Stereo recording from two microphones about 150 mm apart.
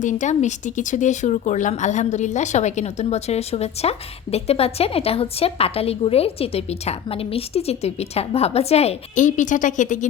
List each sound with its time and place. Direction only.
0.0 s a woman's voice: 55° left (ahead or behind)